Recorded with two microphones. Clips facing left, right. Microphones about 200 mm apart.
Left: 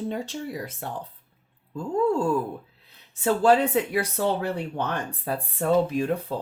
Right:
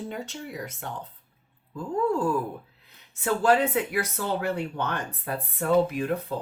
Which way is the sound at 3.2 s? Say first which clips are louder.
Left 3 dB; 30° left (ahead or behind).